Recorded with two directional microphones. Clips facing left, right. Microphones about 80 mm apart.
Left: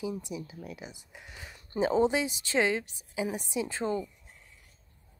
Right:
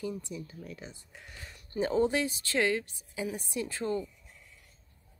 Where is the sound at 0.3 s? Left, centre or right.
Centre.